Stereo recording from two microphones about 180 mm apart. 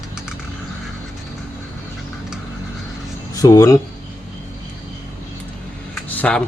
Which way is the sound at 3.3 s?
20° left (ahead or behind).